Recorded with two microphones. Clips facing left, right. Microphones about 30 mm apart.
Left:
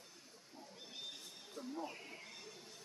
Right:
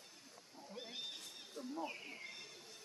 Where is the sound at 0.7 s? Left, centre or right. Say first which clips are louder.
Right 5 dB; right.